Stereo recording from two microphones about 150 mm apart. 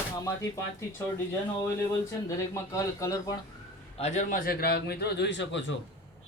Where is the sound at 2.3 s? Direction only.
20° left (ahead or behind).